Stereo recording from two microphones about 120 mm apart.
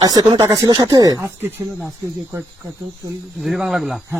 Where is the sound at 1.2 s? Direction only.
20° right (ahead or behind).